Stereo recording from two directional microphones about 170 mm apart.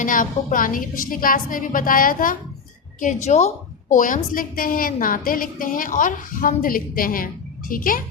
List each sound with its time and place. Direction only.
0.0 s a woman's voice: 50° left (ahead or behind)